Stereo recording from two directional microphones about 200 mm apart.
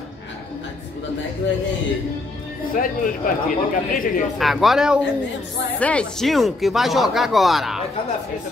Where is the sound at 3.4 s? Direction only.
45° left (ahead or behind).